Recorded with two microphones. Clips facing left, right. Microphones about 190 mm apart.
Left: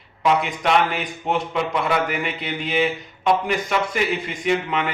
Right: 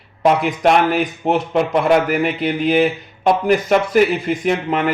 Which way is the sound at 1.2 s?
45° right (ahead or behind).